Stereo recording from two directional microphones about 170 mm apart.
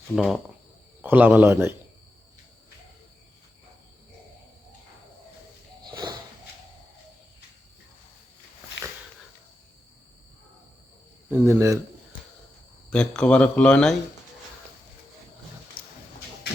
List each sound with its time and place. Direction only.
0.2 s cricket: centre (ahead or behind)
1.0 s a man's voice: 10° right (ahead or behind)
5.9 s a sound: 25° right (ahead or behind)
11.3 s a man's voice: 15° right (ahead or behind)
12.9 s speech: 5° left (ahead or behind)